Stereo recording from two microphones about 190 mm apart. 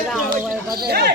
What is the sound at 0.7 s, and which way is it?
Speech, 55° right (ahead or behind).